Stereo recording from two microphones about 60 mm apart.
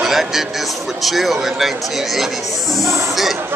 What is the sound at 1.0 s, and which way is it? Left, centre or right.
Speech, centre.